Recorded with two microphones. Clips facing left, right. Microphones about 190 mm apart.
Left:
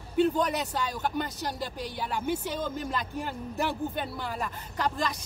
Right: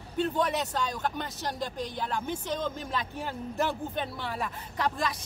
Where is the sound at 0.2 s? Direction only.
Centre (ahead or behind).